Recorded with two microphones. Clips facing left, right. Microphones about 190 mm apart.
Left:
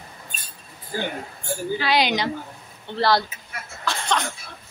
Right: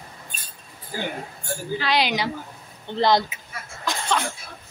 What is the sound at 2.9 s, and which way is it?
Speech, 20° right (ahead or behind).